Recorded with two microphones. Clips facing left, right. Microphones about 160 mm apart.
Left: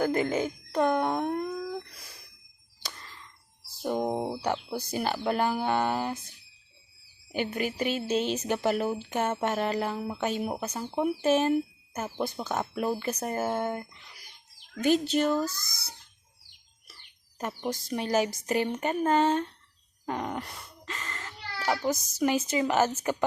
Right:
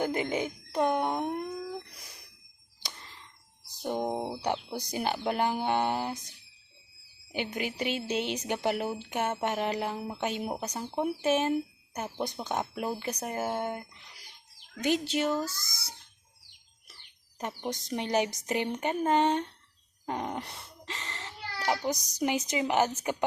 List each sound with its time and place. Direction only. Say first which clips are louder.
0.0 s speech: left 3 dB; 15° right (ahead or behind)
1.5 s a sound: left 3 dB; 20° right (ahead or behind)
3.9 s a sound: left 2 dB; 5° left (ahead or behind)
4.4 s speech: left 1 dB; 15° right (ahead or behind)
7.3 s speech: left 3 dB; 15° right (ahead or behind)
15.1 s speech: left 3 dB; 10° right (ahead or behind)
15.4 s speech: left 4 dB; 10° left (ahead or behind)
17.9 s a woman's voice: left 1 dB; 20° right (ahead or behind)